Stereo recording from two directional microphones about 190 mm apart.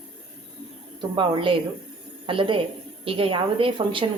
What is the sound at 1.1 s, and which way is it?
A woman's voice, 25° right (ahead or behind).